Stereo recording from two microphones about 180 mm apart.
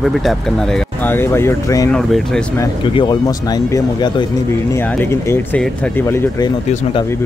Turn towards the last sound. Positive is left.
turn(degrees=15)  # may be behind; listen again after turning